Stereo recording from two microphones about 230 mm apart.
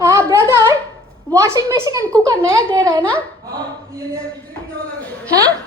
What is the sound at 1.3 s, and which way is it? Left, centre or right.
A child's voice, centre.